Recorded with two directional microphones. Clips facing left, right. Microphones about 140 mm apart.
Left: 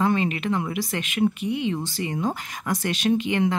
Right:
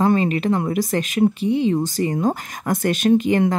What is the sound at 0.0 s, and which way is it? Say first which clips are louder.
A woman's voice: right 5 dB; 40° right (ahead or behind).